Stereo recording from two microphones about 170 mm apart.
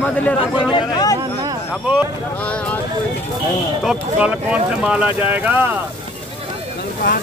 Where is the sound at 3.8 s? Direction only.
5° right (ahead or behind).